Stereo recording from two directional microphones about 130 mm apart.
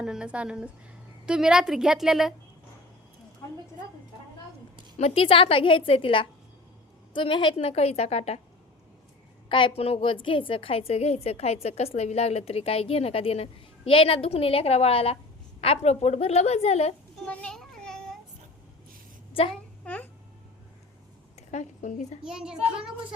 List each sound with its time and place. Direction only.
0.0 s a woman's voice: 5° right (ahead or behind)
4.9 s a woman's voice: 50° left (ahead or behind)
9.5 s a woman's voice: 40° left (ahead or behind)
17.2 s children playing: 5° left (ahead or behind)
19.8 s babbling: 10° left (ahead or behind)
21.3 s speech: 65° left (ahead or behind)
22.2 s a woman's voice: 5° right (ahead or behind)